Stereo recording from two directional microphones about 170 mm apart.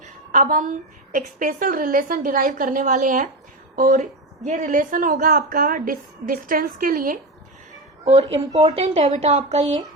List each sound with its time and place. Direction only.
0.0 s a woman's voice: 50° right (ahead or behind)
7.7 s a sound: 40° right (ahead or behind)
8.7 s speech: 40° right (ahead or behind)